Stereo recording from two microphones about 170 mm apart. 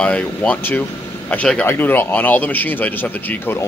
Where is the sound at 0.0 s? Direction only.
5° left (ahead or behind).